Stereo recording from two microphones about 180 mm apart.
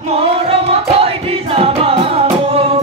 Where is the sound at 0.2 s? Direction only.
35° right (ahead or behind).